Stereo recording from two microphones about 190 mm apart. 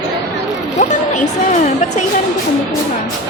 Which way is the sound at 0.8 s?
35° left (ahead or behind).